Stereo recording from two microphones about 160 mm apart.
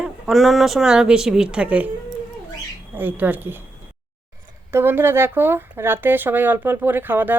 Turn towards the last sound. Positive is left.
turn(degrees=-10)  # may be behind; listen again after turning